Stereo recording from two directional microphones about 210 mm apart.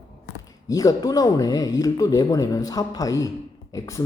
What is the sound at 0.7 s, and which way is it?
Speech, 15° left (ahead or behind).